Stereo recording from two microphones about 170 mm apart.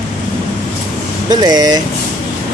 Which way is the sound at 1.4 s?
25° right (ahead or behind).